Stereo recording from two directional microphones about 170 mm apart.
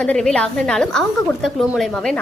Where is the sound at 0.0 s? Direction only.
5° left (ahead or behind).